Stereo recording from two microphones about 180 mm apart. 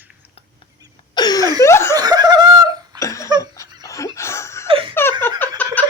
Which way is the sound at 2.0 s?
20° right (ahead or behind).